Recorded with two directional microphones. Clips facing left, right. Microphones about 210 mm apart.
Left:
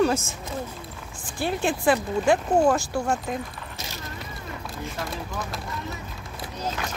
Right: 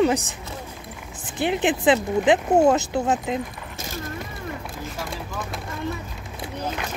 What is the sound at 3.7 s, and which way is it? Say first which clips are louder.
Vehicle: right 7 dB; 50° right (ahead or behind).